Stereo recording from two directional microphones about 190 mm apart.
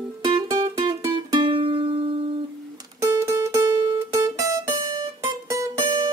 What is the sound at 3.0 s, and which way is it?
Music, 15° right (ahead or behind).